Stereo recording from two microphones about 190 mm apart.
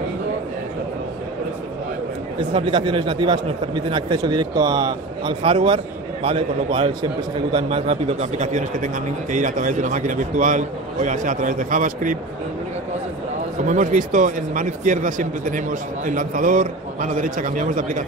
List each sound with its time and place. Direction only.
2.5 s a man's voice: 25° right (ahead or behind); by 12.2 s 45° right (ahead or behind)
13.7 s speech: 40° right (ahead or behind)